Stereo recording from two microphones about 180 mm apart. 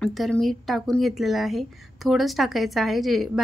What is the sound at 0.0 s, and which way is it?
A woman's voice, centre (ahead or behind).